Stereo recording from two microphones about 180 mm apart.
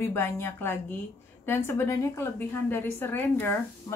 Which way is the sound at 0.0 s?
15° left (ahead or behind).